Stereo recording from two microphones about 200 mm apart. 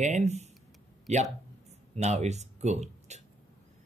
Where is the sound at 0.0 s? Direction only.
35° right (ahead or behind).